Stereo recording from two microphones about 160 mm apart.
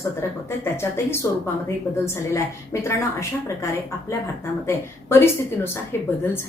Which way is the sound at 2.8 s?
15° left (ahead or behind).